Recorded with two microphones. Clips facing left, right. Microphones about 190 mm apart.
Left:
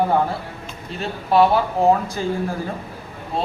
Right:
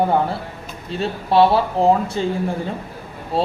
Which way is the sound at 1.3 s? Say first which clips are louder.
Right 1 dB; 30° right (ahead or behind).